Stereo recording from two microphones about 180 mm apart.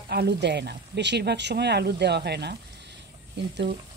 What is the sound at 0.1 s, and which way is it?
Speech, 65° right (ahead or behind).